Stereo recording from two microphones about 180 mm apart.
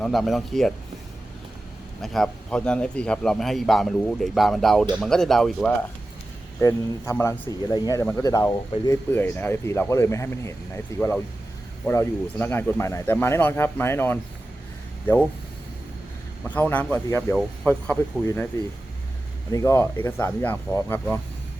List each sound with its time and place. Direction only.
0.0 s a man's voice: centre (ahead or behind)
2.0 s a man's voice: centre (ahead or behind)
6.6 s speech: 15° left (ahead or behind)
16.4 s speech: 10° left (ahead or behind)
19.5 s speech: 15° left (ahead or behind)